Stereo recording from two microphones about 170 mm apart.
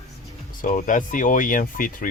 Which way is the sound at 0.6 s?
50° left (ahead or behind).